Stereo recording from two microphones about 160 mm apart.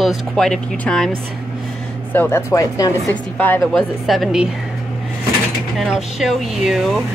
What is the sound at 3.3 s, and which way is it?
Speech, 10° left (ahead or behind).